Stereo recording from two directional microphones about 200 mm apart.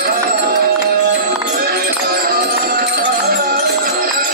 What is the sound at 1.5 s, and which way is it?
Music, 50° right (ahead or behind).